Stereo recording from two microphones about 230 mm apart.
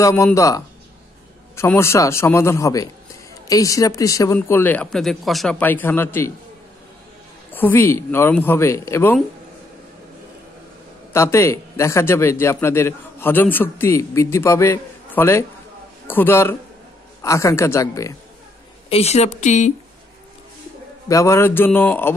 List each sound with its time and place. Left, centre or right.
0.0 s a man's voice: centre
7.5 s a man's voice: centre
11.1 s a man's voice: centre
18.9 s speech: left
21.1 s a man's voice: centre